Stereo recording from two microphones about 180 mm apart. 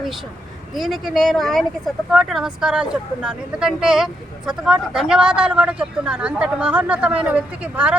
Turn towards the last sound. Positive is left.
turn(degrees=-10)  # may be behind; listen again after turning